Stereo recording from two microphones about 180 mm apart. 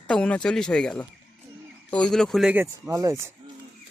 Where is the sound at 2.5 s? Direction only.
15° right (ahead or behind).